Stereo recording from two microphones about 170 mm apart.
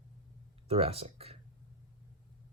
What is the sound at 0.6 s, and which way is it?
Speech, 35° right (ahead or behind).